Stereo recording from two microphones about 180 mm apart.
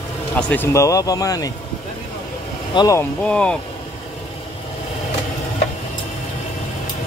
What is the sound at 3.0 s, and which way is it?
Speech, 5° left (ahead or behind).